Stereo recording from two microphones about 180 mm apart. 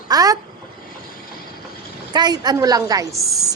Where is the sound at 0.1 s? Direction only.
20° right (ahead or behind).